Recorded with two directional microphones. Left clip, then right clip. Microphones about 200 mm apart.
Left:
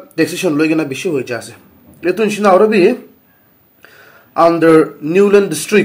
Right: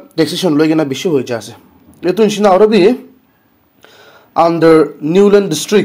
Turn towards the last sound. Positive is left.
turn(degrees=-35)  # may be behind; listen again after turning